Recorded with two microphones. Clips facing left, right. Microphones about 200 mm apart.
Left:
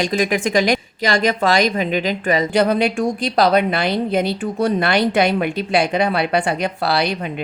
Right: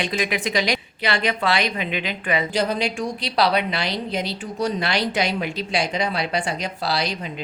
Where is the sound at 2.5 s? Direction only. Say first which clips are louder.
Left 7 dB; 60° left (ahead or behind).